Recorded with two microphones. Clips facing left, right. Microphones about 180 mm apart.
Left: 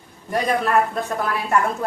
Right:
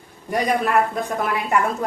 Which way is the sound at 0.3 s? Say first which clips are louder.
Even; 15° right (ahead or behind).